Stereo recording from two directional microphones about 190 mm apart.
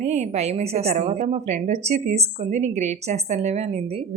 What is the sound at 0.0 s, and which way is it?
A woman's voice, 35° right (ahead or behind).